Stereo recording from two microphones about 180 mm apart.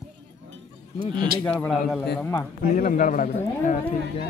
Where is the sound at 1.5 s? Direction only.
5° left (ahead or behind).